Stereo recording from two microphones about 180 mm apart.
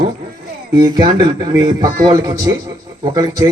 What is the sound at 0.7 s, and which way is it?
A man's voice, 25° right (ahead or behind).